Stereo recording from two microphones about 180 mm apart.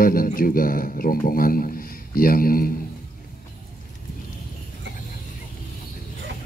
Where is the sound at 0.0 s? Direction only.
55° left (ahead or behind).